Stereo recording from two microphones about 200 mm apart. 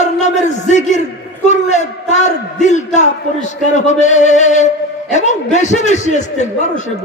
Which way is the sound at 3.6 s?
35° left (ahead or behind).